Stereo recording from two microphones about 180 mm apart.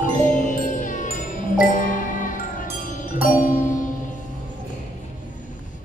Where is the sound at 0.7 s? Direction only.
45° left (ahead or behind).